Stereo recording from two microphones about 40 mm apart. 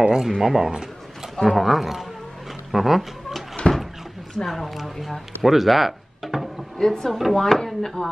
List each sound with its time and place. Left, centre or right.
0.0 s speech: centre
0.4 s a man's voice: centre
3.6 s a sound: centre
4.5 s a man's voice: centre
5.4 s a sound: centre
6.8 s speech: centre